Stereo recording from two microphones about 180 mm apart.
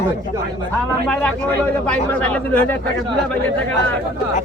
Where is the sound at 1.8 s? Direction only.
10° left (ahead or behind).